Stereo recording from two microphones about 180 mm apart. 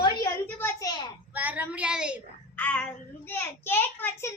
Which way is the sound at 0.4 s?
15° left (ahead or behind).